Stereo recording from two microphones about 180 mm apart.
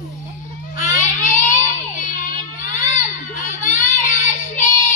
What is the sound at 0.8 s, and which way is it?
Child singing, 45° left (ahead or behind).